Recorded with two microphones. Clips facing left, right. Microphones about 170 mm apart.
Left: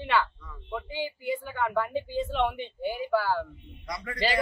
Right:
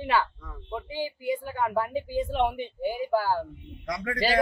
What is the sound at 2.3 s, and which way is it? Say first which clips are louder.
Speech: right 2 dB; 40° right (ahead or behind).